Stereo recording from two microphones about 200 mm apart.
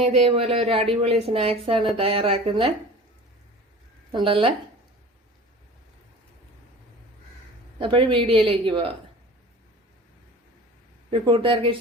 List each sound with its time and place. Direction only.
0.0 s speech: 30° right (ahead or behind)
4.1 s speech: 25° right (ahead or behind)
7.8 s speech: 25° right (ahead or behind)
11.1 s speech: 25° right (ahead or behind)